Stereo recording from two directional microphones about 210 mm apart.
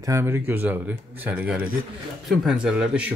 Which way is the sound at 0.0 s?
15° right (ahead or behind).